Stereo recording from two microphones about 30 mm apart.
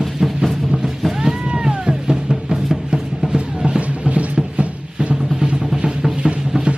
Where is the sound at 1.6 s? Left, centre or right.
Right.